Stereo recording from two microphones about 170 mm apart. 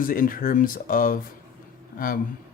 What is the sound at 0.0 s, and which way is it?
Speech, 55° left (ahead or behind).